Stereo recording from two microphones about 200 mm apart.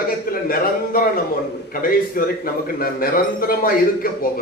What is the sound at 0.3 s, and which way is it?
A man's voice, 45° left (ahead or behind).